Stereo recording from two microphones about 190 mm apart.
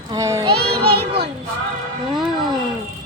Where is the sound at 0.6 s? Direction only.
55° right (ahead or behind).